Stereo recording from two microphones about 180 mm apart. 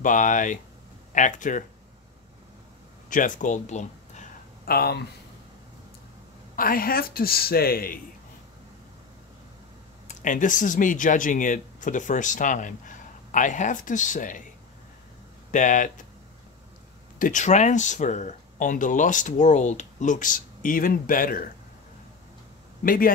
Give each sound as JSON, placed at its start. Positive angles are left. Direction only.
{"t": 0.0, "sound": "speech", "side_deg": 45}
{"t": 3.1, "sound": "speech", "side_deg": 45}
{"t": 4.6, "sound": "a woman's voice", "side_deg": 60}
{"t": 6.5, "sound": "a woman's voice", "side_deg": 55}
{"t": 10.0, "sound": "speech", "side_deg": 45}
{"t": 15.5, "sound": "speech", "side_deg": 45}
{"t": 17.2, "sound": "speech", "side_deg": 45}
{"t": 22.8, "sound": "speech", "side_deg": 50}